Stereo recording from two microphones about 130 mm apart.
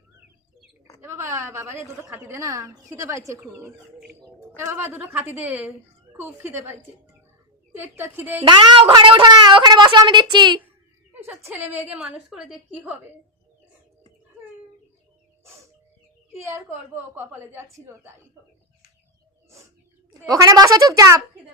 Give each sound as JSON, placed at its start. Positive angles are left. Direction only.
{"t": 1.0, "sound": "a woman's voice", "side_deg": -20}
{"t": 8.4, "sound": "a woman's voice", "side_deg": -35}
{"t": 11.1, "sound": "a woman's voice", "side_deg": -15}
{"t": 16.3, "sound": "a woman's voice", "side_deg": -20}
{"t": 20.2, "sound": "a woman's voice", "side_deg": -30}